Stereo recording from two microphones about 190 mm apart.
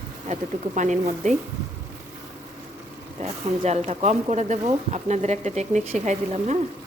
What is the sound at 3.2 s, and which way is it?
Speech, 35° right (ahead or behind).